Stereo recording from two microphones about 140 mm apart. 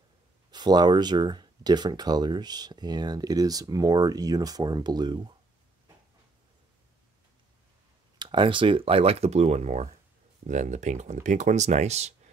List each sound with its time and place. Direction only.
0.5 s speech: 30° right (ahead or behind)
8.2 s speech: 35° right (ahead or behind); by 12.2 s 50° right (ahead or behind)